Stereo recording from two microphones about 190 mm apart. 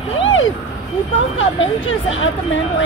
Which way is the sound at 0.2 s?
90° left.